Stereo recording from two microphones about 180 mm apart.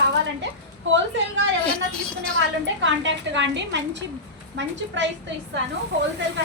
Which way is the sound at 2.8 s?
90° right.